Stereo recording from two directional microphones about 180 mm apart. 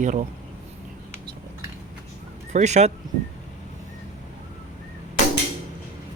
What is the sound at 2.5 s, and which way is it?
Speech, 40° right (ahead or behind).